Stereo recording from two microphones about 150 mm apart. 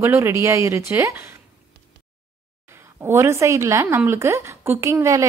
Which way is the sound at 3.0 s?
15° right (ahead or behind).